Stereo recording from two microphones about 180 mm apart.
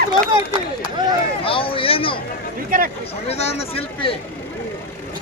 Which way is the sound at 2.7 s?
50° right (ahead or behind).